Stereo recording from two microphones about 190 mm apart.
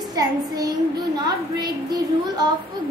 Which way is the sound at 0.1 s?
20° right (ahead or behind).